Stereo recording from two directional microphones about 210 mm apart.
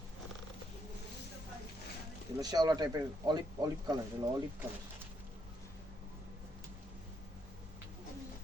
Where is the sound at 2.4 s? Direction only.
20° right (ahead or behind).